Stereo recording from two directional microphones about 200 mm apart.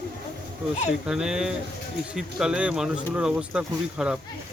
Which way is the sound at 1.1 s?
5° right (ahead or behind).